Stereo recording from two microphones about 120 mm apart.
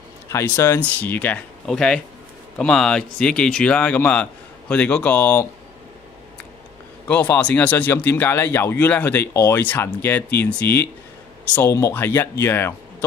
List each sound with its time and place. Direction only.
0.3 s speech: 25° left (ahead or behind)
7.1 s speech: 10° left (ahead or behind)